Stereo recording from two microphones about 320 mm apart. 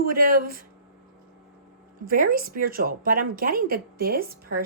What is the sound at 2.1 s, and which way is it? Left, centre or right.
Speech, right.